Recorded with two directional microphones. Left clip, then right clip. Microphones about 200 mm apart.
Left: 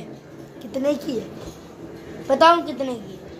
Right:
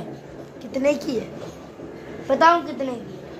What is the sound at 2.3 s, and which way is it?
Speech, 15° left (ahead or behind).